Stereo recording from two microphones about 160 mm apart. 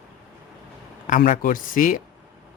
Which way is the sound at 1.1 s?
55° left (ahead or behind).